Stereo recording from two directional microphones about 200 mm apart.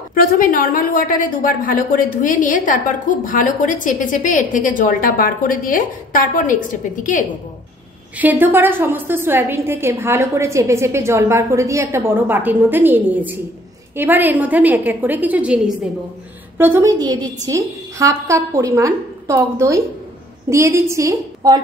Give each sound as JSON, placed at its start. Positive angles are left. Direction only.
{"t": 0.1, "sound": "a woman's voice", "side_deg": 45}
{"t": 8.2, "sound": "a woman's voice", "side_deg": -10}